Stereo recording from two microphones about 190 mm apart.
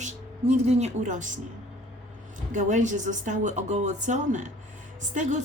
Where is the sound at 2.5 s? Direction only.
40° right (ahead or behind).